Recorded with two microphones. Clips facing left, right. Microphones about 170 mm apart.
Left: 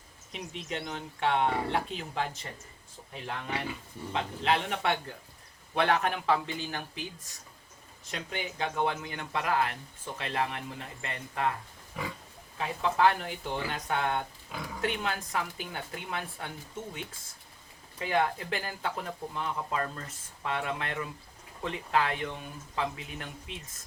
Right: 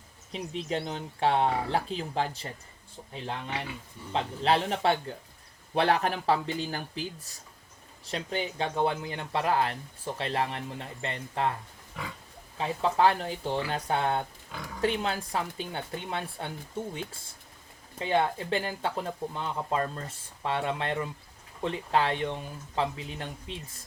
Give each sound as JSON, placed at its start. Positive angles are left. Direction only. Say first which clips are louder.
{"t": 0.3, "sound": "speech", "louder": "right 5 dB", "side_deg": -30}
{"t": 4.1, "sound": "speech", "louder": "right 3 dB", "side_deg": -35}
{"t": 8.1, "sound": "speech", "louder": "right 5 dB", "side_deg": -30}
{"t": 12.5, "sound": "speech", "louder": "right 2 dB", "side_deg": -30}